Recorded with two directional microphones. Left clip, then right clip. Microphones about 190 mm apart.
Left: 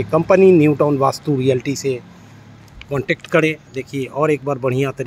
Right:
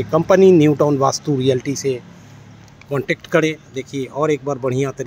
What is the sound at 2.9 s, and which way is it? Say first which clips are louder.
Speech: left 1 dB; 10° right (ahead or behind).